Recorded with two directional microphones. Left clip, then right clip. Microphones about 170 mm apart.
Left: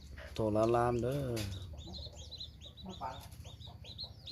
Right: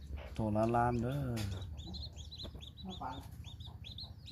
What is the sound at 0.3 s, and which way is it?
Speech, 30° left (ahead or behind).